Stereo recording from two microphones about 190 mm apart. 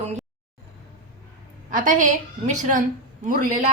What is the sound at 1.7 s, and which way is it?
A woman's voice, 45° right (ahead or behind).